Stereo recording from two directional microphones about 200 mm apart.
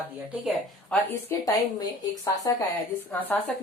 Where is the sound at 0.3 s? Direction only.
5° right (ahead or behind).